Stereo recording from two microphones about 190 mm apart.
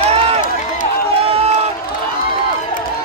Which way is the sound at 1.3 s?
30° right (ahead or behind).